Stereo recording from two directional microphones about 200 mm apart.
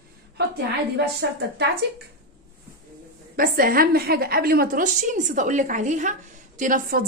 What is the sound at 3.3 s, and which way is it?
A woman's voice, 45° right (ahead or behind).